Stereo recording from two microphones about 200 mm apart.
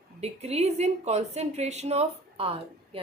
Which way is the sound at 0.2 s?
30° right (ahead or behind).